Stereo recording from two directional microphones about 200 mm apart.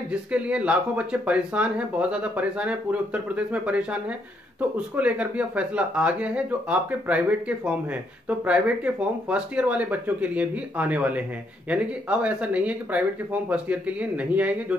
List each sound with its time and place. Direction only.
0.1 s speech: 5° right (ahead or behind)